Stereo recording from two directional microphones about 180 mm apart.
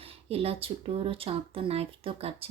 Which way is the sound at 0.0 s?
35° right (ahead or behind).